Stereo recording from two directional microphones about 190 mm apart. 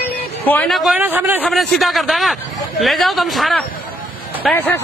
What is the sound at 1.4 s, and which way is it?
A man's voice, centre (ahead or behind).